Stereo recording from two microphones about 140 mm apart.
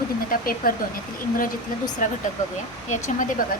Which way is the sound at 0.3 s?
90° left.